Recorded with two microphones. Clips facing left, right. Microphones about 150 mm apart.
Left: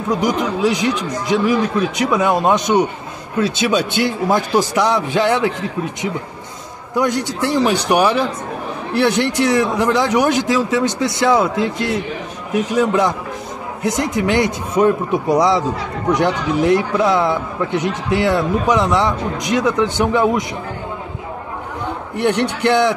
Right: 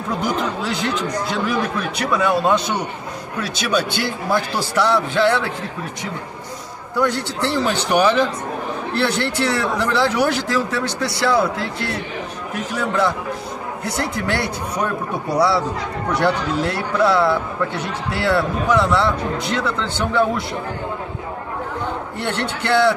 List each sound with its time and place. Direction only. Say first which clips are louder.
0.1 s a man's voice: left 4 dB; 15° left (ahead or behind)
7.0 s a man's voice: left 2 dB; 15° left (ahead or behind)
22.1 s a man's voice: left 6 dB; 15° left (ahead or behind)